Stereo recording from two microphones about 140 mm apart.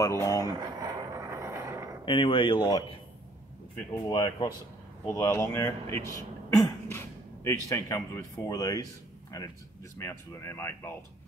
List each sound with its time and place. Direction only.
0.0 s speech: 20° left (ahead or behind)
0.5 s a sound: 25° right (ahead or behind)
2.0 s speech: 35° left (ahead or behind)
3.9 s speech: 30° left (ahead or behind)
5.1 s speech: 20° left (ahead or behind)
6.5 s cough: 25° left (ahead or behind)
7.4 s speech: 25° left (ahead or behind)